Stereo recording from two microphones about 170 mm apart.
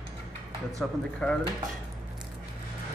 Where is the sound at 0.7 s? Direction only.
5° left (ahead or behind).